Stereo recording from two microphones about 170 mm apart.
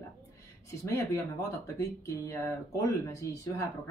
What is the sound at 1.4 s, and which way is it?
Speech, 15° left (ahead or behind).